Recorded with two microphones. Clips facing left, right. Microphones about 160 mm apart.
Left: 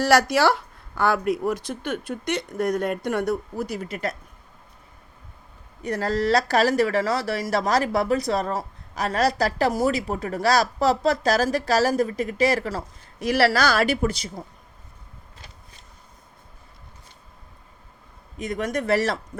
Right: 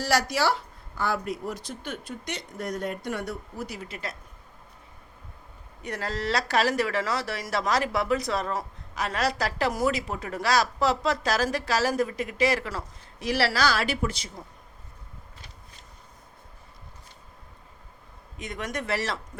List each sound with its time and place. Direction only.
0.0 s speech: 60° left (ahead or behind)
5.8 s speech: 40° left (ahead or behind)
13.2 s speech: 50° left (ahead or behind)
18.3 s speech: 40° left (ahead or behind)